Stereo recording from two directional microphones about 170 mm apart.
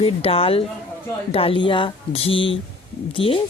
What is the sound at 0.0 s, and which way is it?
Speech, 35° left (ahead or behind).